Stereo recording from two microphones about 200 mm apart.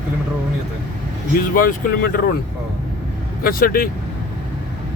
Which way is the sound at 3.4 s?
45° left (ahead or behind).